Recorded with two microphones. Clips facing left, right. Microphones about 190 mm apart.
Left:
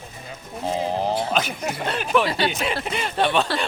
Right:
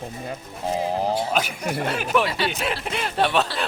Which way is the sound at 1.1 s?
5° right (ahead or behind).